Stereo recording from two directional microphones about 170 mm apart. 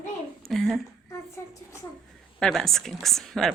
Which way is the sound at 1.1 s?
15° left (ahead or behind).